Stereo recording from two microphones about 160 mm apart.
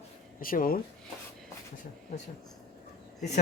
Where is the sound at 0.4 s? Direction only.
60° left (ahead or behind).